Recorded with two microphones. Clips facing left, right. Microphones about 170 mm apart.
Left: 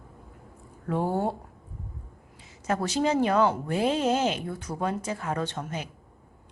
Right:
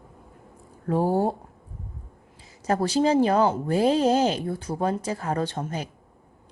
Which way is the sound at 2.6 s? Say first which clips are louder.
Right 4 dB; 35° right (ahead or behind).